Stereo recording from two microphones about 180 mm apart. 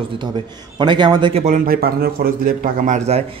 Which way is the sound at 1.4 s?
50° right (ahead or behind).